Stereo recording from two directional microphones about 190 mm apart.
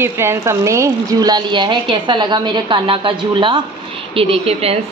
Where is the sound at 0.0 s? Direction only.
15° right (ahead or behind); by 4.7 s 30° right (ahead or behind).